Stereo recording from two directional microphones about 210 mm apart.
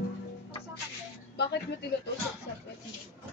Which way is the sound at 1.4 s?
50° left (ahead or behind).